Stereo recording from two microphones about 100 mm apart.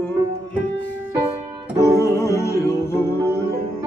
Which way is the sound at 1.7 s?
35° right (ahead or behind).